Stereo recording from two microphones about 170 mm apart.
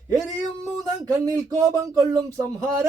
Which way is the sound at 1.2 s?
20° right (ahead or behind).